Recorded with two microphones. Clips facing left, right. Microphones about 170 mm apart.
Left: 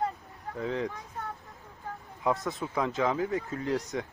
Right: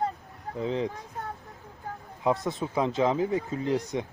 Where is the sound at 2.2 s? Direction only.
25° right (ahead or behind).